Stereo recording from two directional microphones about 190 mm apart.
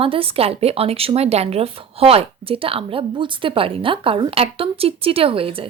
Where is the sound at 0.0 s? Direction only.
30° right (ahead or behind).